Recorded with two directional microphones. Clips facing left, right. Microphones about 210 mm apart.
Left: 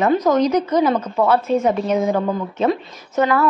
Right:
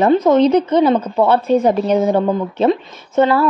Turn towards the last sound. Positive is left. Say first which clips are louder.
# right 4 dB
turn(degrees=-30)  # may be behind; listen again after turning